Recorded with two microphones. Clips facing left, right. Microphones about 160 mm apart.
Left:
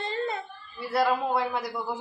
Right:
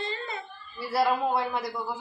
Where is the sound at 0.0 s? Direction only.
55° left (ahead or behind).